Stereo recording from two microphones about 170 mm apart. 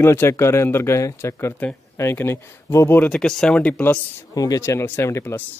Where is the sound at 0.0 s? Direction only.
15° left (ahead or behind).